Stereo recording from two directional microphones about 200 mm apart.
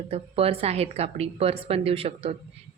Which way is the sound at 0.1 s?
30° right (ahead or behind).